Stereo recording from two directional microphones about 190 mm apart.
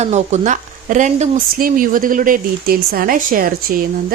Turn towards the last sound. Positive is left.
turn(degrees=-50)  # may be behind; listen again after turning